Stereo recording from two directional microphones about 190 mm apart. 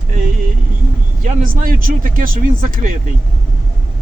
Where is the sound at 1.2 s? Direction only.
45° right (ahead or behind).